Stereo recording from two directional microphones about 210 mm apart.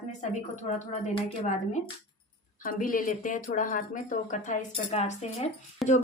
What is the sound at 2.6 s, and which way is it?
Speech, 40° left (ahead or behind).